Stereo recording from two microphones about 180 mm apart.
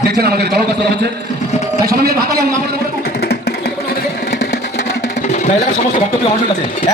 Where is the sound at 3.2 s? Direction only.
60° left (ahead or behind).